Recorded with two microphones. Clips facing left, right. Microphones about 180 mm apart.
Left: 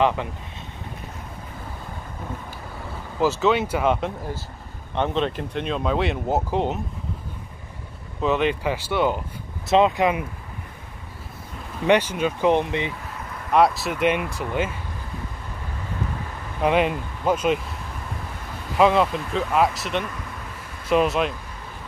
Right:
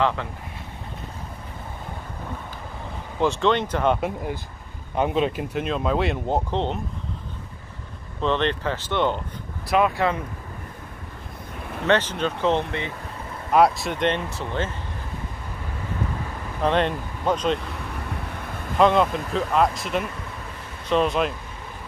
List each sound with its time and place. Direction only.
0.0 s speech: 15° left (ahead or behind)
3.2 s speech: 5° left (ahead or behind)
4.9 s speech: 5° right (ahead or behind)
8.2 s speech: 10° left (ahead or behind)
9.7 s speech: 25° left (ahead or behind)
11.9 s speech: 10° left (ahead or behind)
13.5 s speech: centre (ahead or behind)
16.6 s speech: 10° left (ahead or behind)
18.8 s speech: centre (ahead or behind)